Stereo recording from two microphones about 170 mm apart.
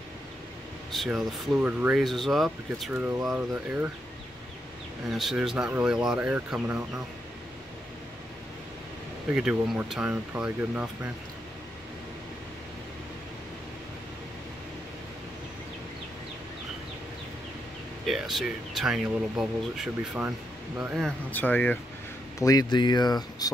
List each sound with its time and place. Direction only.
0.9 s speech: centre (ahead or behind)
5.1 s speech: centre (ahead or behind)
9.3 s speech: 5° right (ahead or behind)
18.0 s speech: centre (ahead or behind)
21.3 s speech: 10° left (ahead or behind)
22.4 s speech: 20° left (ahead or behind)